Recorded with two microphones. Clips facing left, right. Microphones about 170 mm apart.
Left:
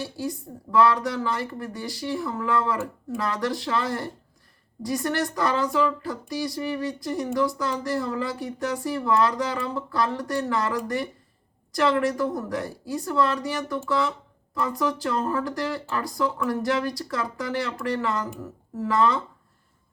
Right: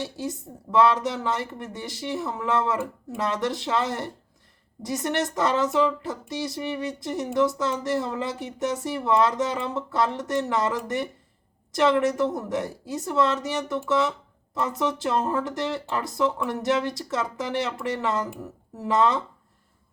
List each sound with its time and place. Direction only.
0.0 s speech: 20° right (ahead or behind)